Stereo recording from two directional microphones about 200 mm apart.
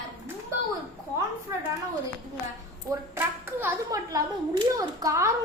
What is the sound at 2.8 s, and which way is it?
A woman's voice, 10° right (ahead or behind).